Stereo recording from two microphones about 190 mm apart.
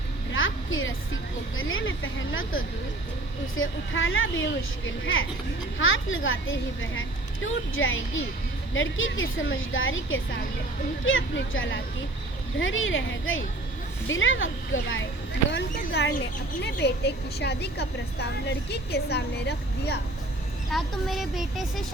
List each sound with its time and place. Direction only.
0.3 s a sound: 90° left
1.5 s a woman's voice: 90° left
3.5 s a woman's voice: 90° left
15.4 s a woman's voice: 65° left (ahead or behind)
20.7 s speech: centre (ahead or behind)